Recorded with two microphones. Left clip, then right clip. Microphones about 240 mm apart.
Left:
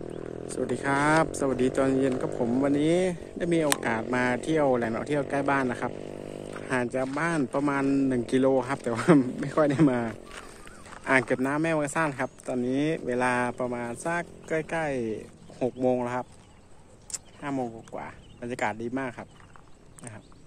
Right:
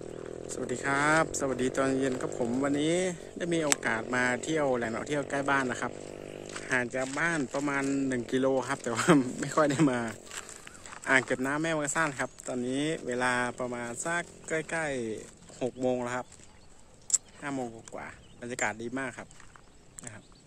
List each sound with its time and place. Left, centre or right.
0.5 s speech: centre
5.9 s vehicle: left
6.7 s speech: centre